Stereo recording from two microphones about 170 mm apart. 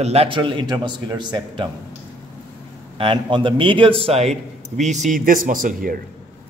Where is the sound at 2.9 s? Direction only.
30° right (ahead or behind); by 6.0 s 55° right (ahead or behind).